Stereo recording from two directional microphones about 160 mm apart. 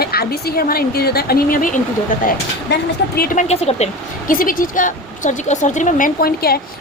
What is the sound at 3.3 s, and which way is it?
Speech, 40° left (ahead or behind).